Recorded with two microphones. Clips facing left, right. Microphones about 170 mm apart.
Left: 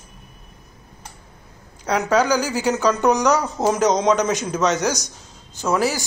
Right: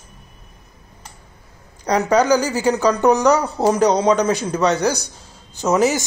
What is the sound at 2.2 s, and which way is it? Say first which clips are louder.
Speech: right 4 dB; 10° left (ahead or behind).